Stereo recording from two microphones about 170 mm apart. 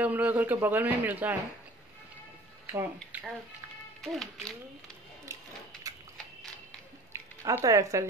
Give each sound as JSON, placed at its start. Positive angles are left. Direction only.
{"t": 0.0, "sound": "speech", "side_deg": -10}
{"t": 2.6, "sound": "speech", "side_deg": -10}
{"t": 4.0, "sound": "a child's voice", "side_deg": 0}
{"t": 7.1, "sound": "speech", "side_deg": -20}